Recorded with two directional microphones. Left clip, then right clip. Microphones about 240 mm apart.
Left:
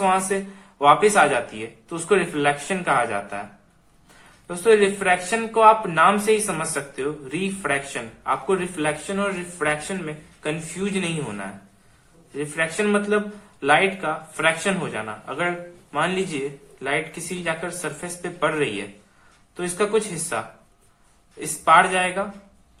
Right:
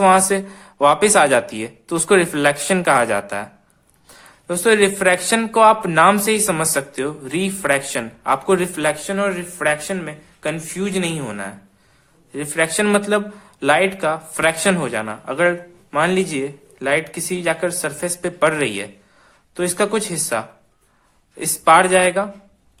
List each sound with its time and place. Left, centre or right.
0.0 s speech: right
4.4 s speech: right